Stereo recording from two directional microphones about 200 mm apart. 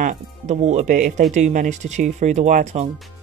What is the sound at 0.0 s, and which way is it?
Speech, 35° right (ahead or behind).